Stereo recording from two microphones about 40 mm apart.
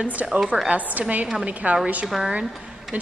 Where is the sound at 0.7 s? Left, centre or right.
Right.